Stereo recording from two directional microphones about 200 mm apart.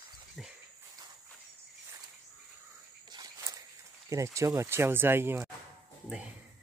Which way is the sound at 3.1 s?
20° right (ahead or behind).